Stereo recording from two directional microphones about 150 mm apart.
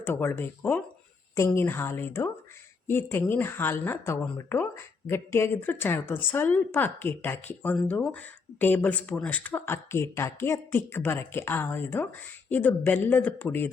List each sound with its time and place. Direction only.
0.0 s speech: 15° left (ahead or behind)